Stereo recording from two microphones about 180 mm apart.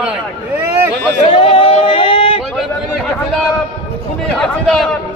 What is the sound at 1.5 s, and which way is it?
Yodeling, 30° left (ahead or behind).